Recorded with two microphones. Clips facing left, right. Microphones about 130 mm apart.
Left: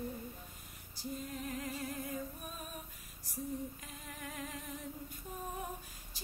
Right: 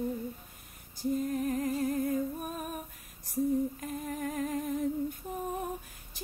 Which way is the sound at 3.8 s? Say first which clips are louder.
Right 13 dB; 45° right (ahead or behind).